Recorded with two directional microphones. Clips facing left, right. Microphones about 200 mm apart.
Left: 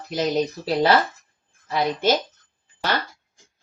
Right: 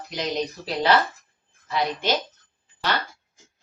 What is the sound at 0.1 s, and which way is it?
A woman's voice, 40° left (ahead or behind).